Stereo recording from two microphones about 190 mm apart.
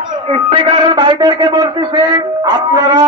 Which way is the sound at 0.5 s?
25° right (ahead or behind).